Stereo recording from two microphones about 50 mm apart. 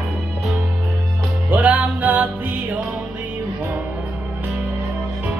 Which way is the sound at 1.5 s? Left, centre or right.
Right.